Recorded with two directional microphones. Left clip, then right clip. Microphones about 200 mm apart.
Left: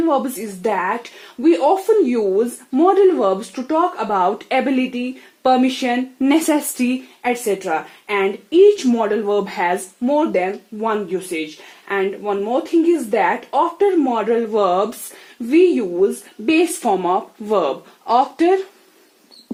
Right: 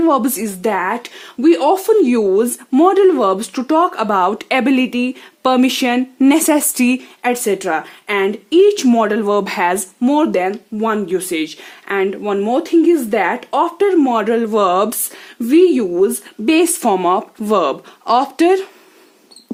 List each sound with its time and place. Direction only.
0.0 s speech: 50° right (ahead or behind)